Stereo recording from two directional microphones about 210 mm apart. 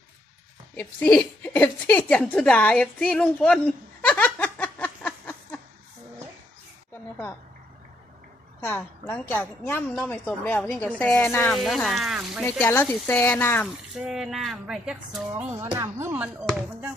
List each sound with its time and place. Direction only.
0.8 s speech: 10° left (ahead or behind)
4.0 s a sound: 5° left (ahead or behind)
8.6 s a woman's voice: 5° left (ahead or behind)
11.5 s speech: centre (ahead or behind)
12.5 s a woman's voice: 10° left (ahead or behind)
13.9 s speech: centre (ahead or behind)